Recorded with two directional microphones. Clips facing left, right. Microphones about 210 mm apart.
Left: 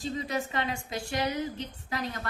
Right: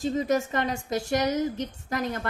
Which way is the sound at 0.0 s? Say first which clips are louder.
Right 7 dB; 45° right (ahead or behind).